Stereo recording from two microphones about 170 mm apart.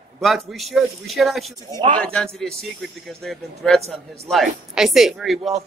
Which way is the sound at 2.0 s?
5° left (ahead or behind).